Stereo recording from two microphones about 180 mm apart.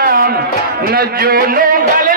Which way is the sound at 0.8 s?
55° right (ahead or behind).